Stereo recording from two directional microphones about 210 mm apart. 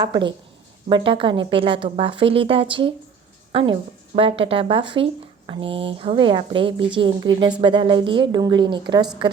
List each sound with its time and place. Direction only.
0.0 s speech: 20° right (ahead or behind)